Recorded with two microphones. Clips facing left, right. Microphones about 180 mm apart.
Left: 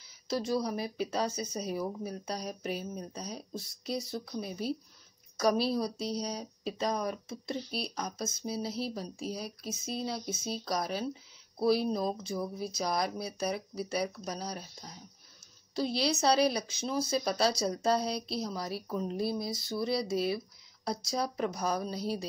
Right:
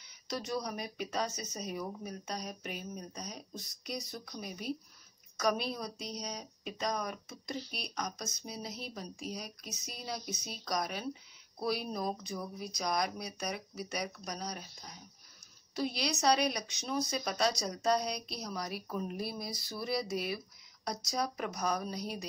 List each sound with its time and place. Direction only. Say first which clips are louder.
0.3 s speech: left 6 dB; 30° left (ahead or behind)
15.7 s speech: left 4 dB; 30° left (ahead or behind)